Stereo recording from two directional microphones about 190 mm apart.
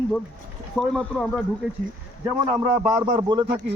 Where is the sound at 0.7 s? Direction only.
5° left (ahead or behind).